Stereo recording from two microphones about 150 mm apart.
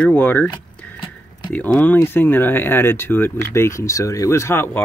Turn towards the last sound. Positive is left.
turn(degrees=15)  # may be behind; listen again after turning